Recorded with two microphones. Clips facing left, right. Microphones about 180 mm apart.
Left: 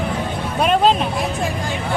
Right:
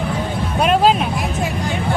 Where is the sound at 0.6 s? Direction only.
Centre (ahead or behind).